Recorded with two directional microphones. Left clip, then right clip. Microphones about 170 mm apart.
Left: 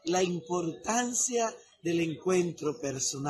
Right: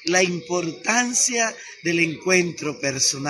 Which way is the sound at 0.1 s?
5° right (ahead or behind).